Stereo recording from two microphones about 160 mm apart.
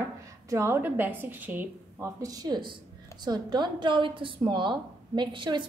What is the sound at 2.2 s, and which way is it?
A woman's voice, 25° right (ahead or behind).